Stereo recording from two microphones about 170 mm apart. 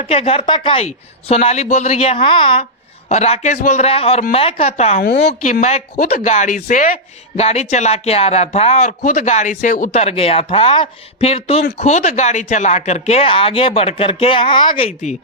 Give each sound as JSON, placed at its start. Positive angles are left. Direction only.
{"t": 0.0, "sound": "speech", "side_deg": 35}
{"t": 4.9, "sound": "a woman's voice", "side_deg": 70}
{"t": 5.3, "sound": "speech", "side_deg": 45}